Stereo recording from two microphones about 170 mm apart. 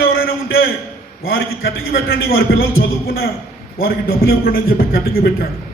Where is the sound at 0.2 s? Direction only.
60° left (ahead or behind).